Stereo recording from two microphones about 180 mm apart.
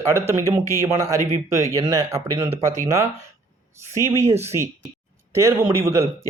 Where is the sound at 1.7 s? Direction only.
20° right (ahead or behind).